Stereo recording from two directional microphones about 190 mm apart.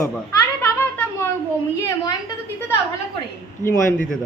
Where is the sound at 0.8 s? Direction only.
10° left (ahead or behind).